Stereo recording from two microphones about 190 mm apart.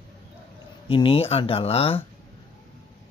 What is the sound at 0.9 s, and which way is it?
Speech, 30° left (ahead or behind).